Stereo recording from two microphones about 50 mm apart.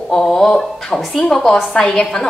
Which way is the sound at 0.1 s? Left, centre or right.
Centre.